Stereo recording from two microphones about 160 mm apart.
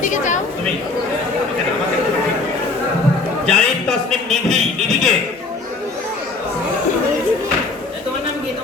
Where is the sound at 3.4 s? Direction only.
5° left (ahead or behind).